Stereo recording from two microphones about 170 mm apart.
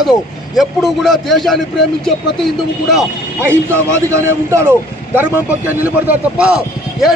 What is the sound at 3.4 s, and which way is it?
A man's voice, 15° right (ahead or behind).